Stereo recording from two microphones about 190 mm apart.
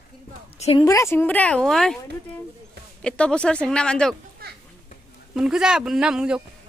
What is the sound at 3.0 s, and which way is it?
Speech, 5° left (ahead or behind).